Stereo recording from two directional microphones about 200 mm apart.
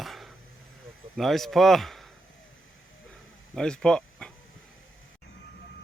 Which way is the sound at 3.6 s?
5° left (ahead or behind).